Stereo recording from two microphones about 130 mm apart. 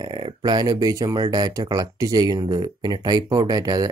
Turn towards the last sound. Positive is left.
turn(degrees=-30)  # may be behind; listen again after turning